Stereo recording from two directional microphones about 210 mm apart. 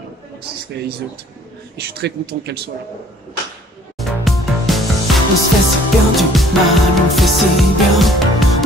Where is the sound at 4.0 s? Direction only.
Centre (ahead or behind).